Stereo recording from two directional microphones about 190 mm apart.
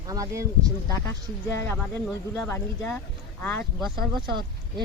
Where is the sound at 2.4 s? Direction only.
10° left (ahead or behind).